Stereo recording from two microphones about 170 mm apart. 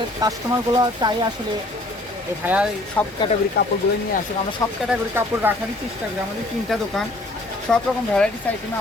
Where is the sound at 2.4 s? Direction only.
10° right (ahead or behind).